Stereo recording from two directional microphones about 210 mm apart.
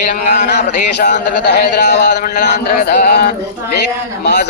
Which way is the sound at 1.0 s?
50° left (ahead or behind).